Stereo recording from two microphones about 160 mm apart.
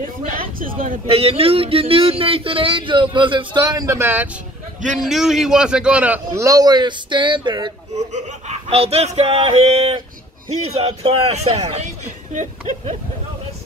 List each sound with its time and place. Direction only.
0.6 s speech: 60° right (ahead or behind)
1.0 s speech: 35° right (ahead or behind); by 4.3 s 15° right (ahead or behind)
4.9 s a man's voice: centre (ahead or behind); by 7.7 s 30° right (ahead or behind)
8.1 s a man's voice: 40° right (ahead or behind)